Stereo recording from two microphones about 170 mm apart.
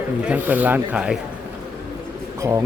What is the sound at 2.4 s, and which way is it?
Speech, 15° right (ahead or behind).